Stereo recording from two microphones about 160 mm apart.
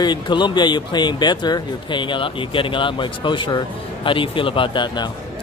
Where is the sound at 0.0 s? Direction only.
30° left (ahead or behind).